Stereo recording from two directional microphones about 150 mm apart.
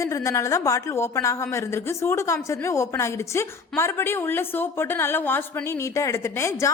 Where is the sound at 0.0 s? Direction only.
20° left (ahead or behind).